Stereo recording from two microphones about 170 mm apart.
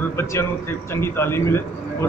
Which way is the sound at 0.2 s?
15° left (ahead or behind).